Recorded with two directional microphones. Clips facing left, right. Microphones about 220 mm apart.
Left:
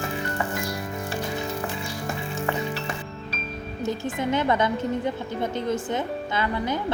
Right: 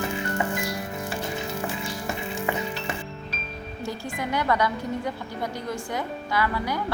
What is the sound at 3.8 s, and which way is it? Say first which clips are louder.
A woman's voice: left 5 dB; 20° left (ahead or behind).